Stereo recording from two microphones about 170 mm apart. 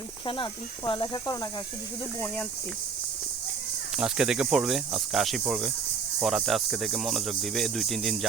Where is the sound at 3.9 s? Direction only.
5° right (ahead or behind).